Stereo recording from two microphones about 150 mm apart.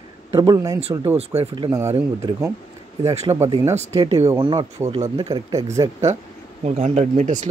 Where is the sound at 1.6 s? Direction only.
20° right (ahead or behind).